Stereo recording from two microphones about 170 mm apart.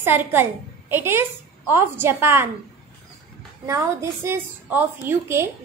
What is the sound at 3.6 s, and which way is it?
A woman's voice, 15° right (ahead or behind).